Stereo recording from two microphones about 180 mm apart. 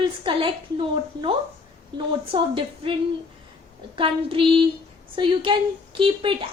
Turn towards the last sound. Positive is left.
turn(degrees=-30)  # may be behind; listen again after turning